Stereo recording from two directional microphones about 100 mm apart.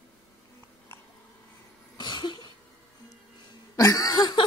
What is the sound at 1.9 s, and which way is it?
Cough, 50° left (ahead or behind).